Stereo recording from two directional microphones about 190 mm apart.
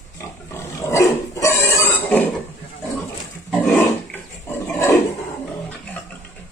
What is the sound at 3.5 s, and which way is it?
Pig, 5° left (ahead or behind).